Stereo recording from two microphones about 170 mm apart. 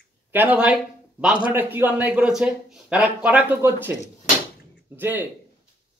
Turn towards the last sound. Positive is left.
turn(degrees=-10)  # may be behind; listen again after turning